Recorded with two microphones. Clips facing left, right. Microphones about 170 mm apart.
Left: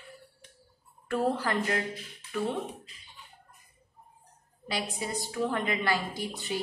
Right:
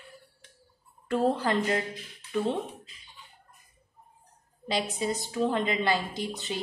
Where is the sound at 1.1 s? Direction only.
20° right (ahead or behind).